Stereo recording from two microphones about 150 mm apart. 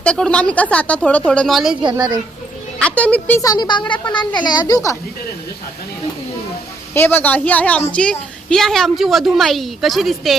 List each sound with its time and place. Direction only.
0.0 s a woman's voice: 5° left (ahead or behind)
1.7 s a woman's voice: 30° right (ahead or behind)
2.7 s a woman's voice: 10° left (ahead or behind)
3.4 s speech: 25° left (ahead or behind)
6.9 s a woman's voice: 15° left (ahead or behind)